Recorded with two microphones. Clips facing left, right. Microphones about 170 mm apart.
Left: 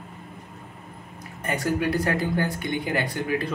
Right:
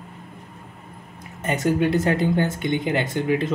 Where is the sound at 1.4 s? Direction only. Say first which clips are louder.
Right 4 dB; 20° right (ahead or behind).